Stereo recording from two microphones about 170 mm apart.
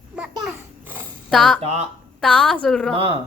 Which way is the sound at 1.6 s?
40° right (ahead or behind).